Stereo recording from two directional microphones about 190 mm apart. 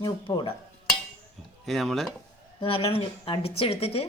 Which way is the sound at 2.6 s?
30° left (ahead or behind).